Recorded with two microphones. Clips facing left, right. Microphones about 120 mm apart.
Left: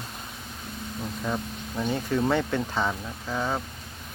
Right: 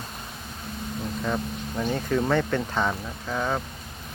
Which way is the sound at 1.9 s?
15° left (ahead or behind).